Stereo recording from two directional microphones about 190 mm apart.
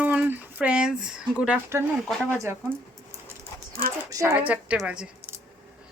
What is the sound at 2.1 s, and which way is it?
Speech, centre (ahead or behind).